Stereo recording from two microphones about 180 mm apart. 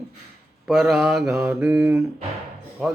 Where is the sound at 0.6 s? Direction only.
Centre (ahead or behind).